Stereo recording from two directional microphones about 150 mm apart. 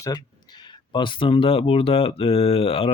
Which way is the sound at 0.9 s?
35° left (ahead or behind).